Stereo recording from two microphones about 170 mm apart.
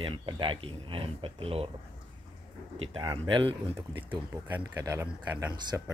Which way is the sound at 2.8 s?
30° right (ahead or behind).